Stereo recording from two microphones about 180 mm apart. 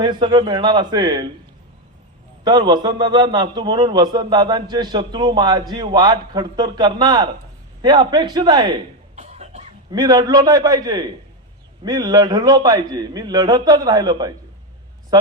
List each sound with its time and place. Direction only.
0.0 s a man's voice: 25° right (ahead or behind)
2.4 s a man's voice: 25° right (ahead or behind)
9.2 s cough: 40° right (ahead or behind)
9.9 s a man's voice: 20° right (ahead or behind)